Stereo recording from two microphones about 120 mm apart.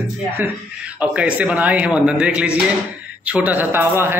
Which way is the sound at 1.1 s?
10° right (ahead or behind).